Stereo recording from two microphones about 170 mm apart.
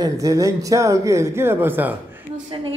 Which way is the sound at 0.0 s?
20° right (ahead or behind).